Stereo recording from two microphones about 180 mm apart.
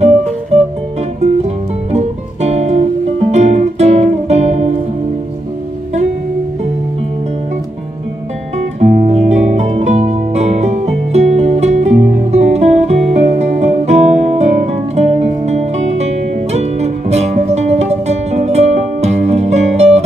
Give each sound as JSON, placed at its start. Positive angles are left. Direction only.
{"t": 0.5, "sound": "music", "side_deg": -35}
{"t": 1.9, "sound": "music", "side_deg": -35}
{"t": 8.7, "sound": "music", "side_deg": -45}